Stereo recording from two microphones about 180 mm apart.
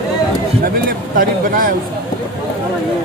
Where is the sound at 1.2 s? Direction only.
50° right (ahead or behind).